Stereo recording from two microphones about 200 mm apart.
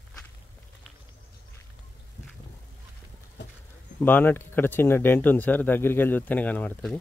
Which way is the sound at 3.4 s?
60° left (ahead or behind).